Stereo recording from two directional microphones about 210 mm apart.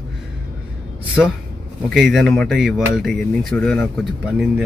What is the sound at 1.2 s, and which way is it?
Speech, 5° left (ahead or behind).